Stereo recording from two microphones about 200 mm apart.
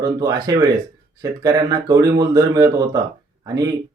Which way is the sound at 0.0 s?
20° right (ahead or behind).